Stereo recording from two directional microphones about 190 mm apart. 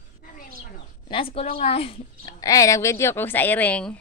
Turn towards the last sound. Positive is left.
turn(degrees=5)  # may be behind; listen again after turning